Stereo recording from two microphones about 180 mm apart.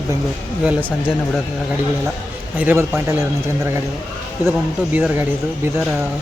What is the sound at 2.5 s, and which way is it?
Speech, 10° right (ahead or behind).